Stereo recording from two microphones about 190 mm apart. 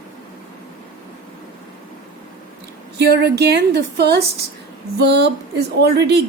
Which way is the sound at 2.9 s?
60° right (ahead or behind).